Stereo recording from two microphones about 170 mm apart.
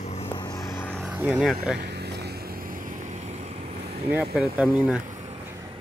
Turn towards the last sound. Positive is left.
turn(degrees=-5)  # may be behind; listen again after turning